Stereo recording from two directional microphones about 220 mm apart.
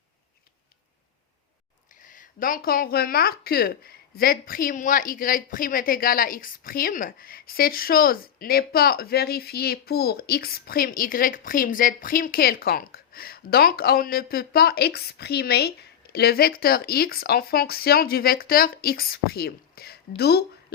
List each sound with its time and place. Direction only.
2.0 s speech: 35° left (ahead or behind)